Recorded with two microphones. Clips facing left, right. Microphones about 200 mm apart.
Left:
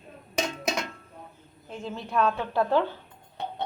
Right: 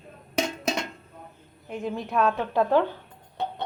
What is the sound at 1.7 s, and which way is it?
Speech, 15° right (ahead or behind).